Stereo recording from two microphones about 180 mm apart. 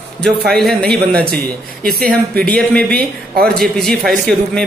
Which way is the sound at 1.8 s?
60° right (ahead or behind).